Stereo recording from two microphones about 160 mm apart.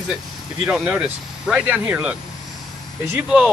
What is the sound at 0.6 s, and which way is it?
Speech, 5° right (ahead or behind).